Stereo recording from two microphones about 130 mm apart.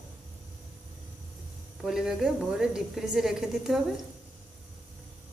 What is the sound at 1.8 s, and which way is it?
A woman's voice, 5° right (ahead or behind).